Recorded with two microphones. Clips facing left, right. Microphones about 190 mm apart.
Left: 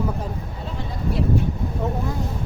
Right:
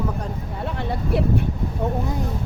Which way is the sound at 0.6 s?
65° right (ahead or behind).